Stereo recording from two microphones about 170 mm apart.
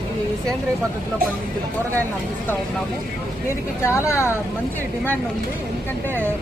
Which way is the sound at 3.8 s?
15° left (ahead or behind).